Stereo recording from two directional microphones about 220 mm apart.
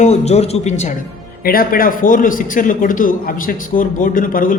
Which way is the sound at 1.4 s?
40° left (ahead or behind).